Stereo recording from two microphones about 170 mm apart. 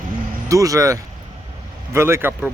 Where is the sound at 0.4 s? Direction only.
20° right (ahead or behind).